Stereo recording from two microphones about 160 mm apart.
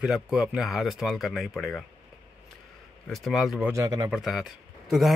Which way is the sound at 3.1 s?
Centre (ahead or behind).